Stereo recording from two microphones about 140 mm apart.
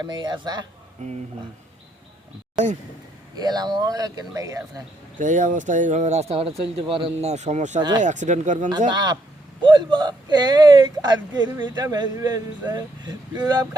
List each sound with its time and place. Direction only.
0.0 s speech: 30° right (ahead or behind)
1.0 s speech: 60° right (ahead or behind)
3.3 s speech: 30° right (ahead or behind)
5.1 s speech: 65° right (ahead or behind)
7.8 s speech: 30° right (ahead or behind)
8.0 s speech: 60° right (ahead or behind)
8.9 s speech: 30° right (ahead or behind)